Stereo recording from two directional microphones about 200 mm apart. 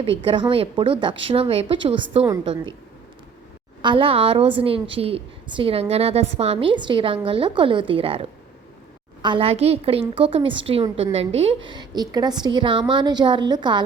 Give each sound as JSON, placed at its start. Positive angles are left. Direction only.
{"t": 0.2, "sound": "a woman's voice", "side_deg": -25}
{"t": 3.8, "sound": "a woman's voice", "side_deg": -25}